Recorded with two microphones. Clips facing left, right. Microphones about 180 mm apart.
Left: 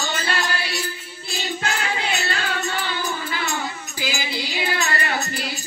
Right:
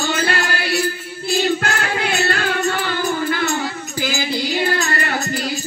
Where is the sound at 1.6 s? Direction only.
55° right (ahead or behind).